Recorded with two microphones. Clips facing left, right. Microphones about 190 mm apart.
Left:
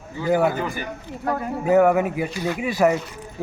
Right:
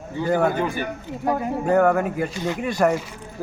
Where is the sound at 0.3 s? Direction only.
5° left (ahead or behind).